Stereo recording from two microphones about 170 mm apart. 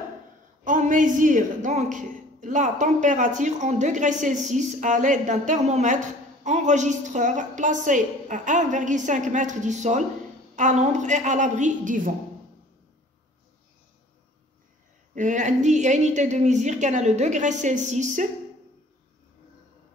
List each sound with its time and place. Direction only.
0.7 s a woman's voice: 50° right (ahead or behind)
15.1 s a woman's voice: 45° right (ahead or behind)